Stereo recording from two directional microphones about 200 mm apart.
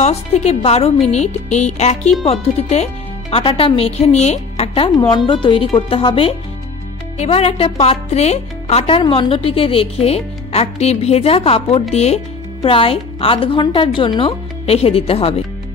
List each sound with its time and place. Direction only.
0.0 s speech: 35° left (ahead or behind)